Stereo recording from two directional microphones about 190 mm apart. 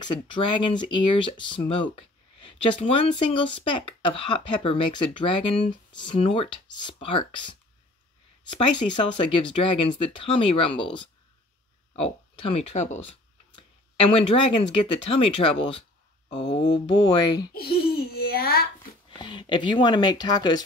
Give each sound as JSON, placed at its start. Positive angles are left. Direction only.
{"t": 0.0, "sound": "speech", "side_deg": 25}
{"t": 17.6, "sound": "a child's voice", "side_deg": 55}
{"t": 19.0, "sound": "speech", "side_deg": 25}